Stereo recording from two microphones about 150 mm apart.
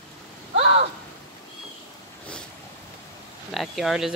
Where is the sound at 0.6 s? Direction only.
45° right (ahead or behind).